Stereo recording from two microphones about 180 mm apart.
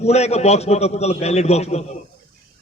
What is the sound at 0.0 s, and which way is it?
A man's voice, 35° left (ahead or behind).